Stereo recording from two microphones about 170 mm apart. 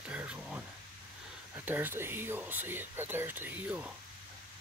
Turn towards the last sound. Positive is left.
turn(degrees=-10)  # may be behind; listen again after turning